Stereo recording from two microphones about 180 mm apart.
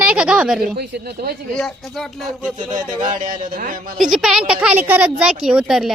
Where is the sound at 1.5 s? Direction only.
Centre (ahead or behind).